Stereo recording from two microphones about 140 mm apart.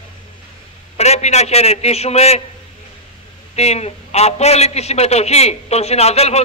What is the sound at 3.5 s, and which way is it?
A man's voice, 50° left (ahead or behind).